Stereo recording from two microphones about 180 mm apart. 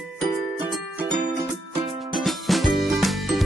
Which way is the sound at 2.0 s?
Centre (ahead or behind).